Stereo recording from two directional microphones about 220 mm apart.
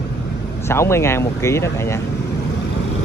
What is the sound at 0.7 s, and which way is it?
Speech, 10° left (ahead or behind).